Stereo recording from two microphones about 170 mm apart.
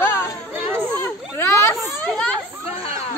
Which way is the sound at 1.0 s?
15° left (ahead or behind).